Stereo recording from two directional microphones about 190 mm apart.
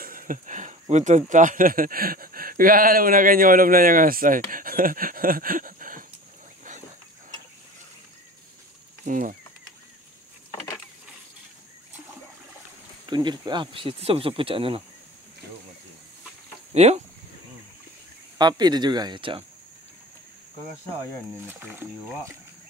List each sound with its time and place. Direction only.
0.0 s speech: 45° right (ahead or behind)
9.0 s speech: 45° right (ahead or behind)
13.1 s speech: 25° right (ahead or behind)
16.7 s speech: 35° right (ahead or behind)
18.4 s speech: 20° right (ahead or behind)
21.5 s speech: 10° right (ahead or behind)